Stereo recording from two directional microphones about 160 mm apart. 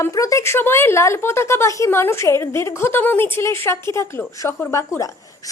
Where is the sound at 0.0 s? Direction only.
20° left (ahead or behind).